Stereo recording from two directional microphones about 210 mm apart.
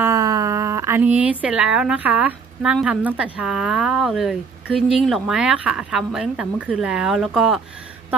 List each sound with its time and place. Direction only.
0.0 s speech: 15° right (ahead or behind)